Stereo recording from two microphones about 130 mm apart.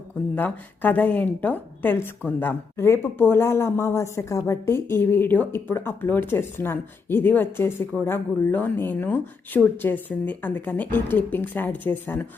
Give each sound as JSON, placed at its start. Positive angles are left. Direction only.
{"t": 0.3, "sound": "speech", "side_deg": 15}